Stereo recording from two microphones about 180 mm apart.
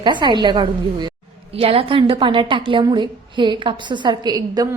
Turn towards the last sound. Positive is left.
turn(degrees=-20)  # may be behind; listen again after turning